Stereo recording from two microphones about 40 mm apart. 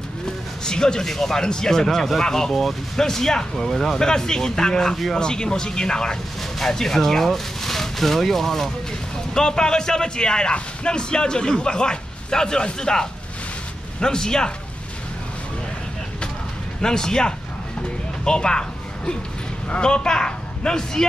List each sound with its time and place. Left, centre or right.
0.7 s speech: centre
9.3 s a man's voice: centre
16.8 s a man's voice: centre